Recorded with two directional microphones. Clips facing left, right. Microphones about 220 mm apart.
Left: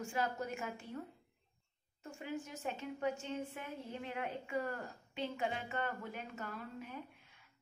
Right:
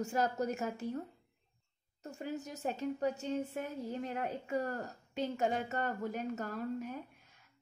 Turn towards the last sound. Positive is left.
turn(degrees=-40)  # may be behind; listen again after turning